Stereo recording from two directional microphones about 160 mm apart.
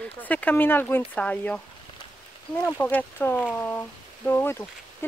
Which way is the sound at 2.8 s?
10° left (ahead or behind).